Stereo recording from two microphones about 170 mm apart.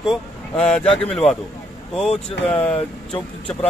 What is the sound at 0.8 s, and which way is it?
Speech, 35° left (ahead or behind).